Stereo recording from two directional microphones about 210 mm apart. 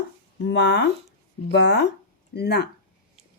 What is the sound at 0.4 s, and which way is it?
A woman's voice, 55° left (ahead or behind).